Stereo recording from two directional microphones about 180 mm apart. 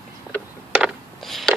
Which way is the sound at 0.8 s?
Centre (ahead or behind).